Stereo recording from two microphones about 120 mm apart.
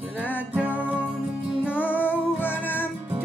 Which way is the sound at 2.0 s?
15° left (ahead or behind).